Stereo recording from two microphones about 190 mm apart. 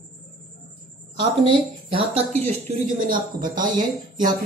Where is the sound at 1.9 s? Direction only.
30° right (ahead or behind).